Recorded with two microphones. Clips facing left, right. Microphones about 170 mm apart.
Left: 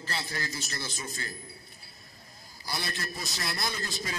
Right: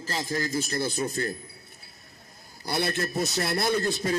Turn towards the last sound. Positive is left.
turn(degrees=-55)  # may be behind; listen again after turning